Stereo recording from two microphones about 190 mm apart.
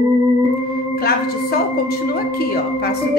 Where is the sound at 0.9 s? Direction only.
55° left (ahead or behind).